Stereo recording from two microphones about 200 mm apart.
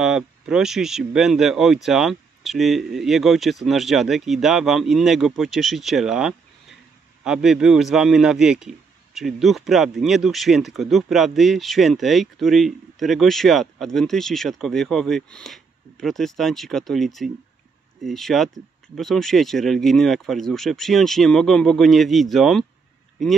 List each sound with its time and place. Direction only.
0.0 s a man's voice: 5° right (ahead or behind)